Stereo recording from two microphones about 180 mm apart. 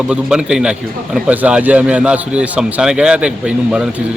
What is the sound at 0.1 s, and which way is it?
A man's voice, 5° right (ahead or behind).